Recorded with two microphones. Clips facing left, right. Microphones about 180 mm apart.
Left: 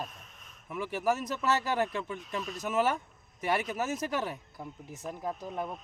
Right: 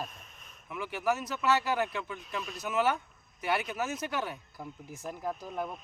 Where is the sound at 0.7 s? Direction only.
45° left (ahead or behind).